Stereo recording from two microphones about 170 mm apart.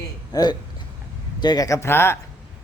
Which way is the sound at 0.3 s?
25° left (ahead or behind).